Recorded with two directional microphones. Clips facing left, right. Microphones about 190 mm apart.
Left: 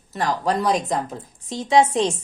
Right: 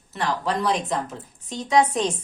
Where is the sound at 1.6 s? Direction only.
25° left (ahead or behind).